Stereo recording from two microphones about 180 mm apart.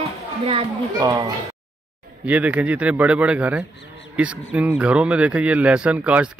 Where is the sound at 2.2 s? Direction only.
10° right (ahead or behind).